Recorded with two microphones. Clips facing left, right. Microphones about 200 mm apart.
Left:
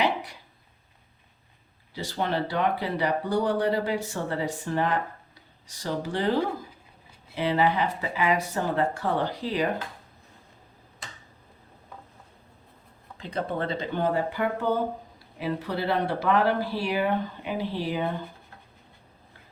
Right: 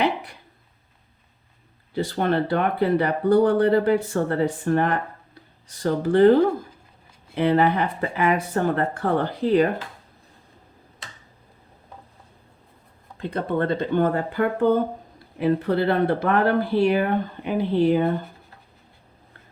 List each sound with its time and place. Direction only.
0.0 s a sound: 55° right (ahead or behind)
2.0 s speech: 55° right (ahead or behind)
13.1 s speech: 55° right (ahead or behind)